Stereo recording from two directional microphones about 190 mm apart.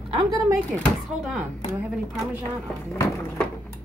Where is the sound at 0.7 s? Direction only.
Centre (ahead or behind).